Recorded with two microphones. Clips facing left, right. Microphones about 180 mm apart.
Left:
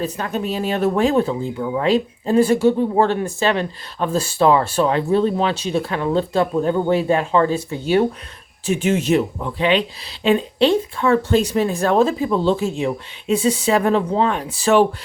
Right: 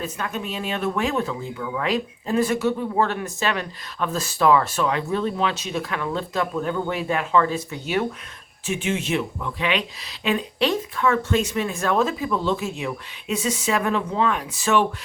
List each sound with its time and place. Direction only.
0.0 s speech: 35° left (ahead or behind)